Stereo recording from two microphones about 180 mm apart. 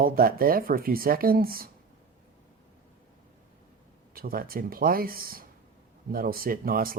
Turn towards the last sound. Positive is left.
turn(degrees=-55)  # may be behind; listen again after turning